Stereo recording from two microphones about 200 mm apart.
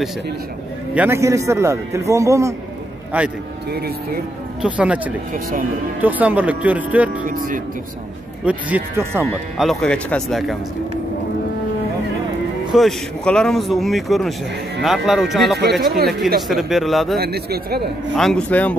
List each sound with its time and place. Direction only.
0.9 s a man's voice: 10° right (ahead or behind)
3.7 s a man's voice: 50° right (ahead or behind)
4.6 s a man's voice: 5° right (ahead or behind)
5.3 s a man's voice: 45° right (ahead or behind)
5.9 s a man's voice: 10° right (ahead or behind)
7.2 s a man's voice: 45° right (ahead or behind)
8.5 s a man's voice: 5° right (ahead or behind)
9.6 s speech: centre (ahead or behind)
12.7 s speech: 5° left (ahead or behind)
15.8 s a man's voice: 45° right (ahead or behind)
16.4 s speech: centre (ahead or behind)
17.2 s a man's voice: 50° right (ahead or behind)
18.1 s speech: 5° left (ahead or behind)